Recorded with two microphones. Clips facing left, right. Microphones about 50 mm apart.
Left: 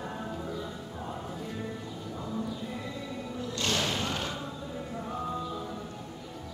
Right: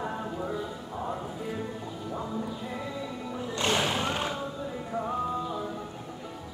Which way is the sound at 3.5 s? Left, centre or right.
Centre.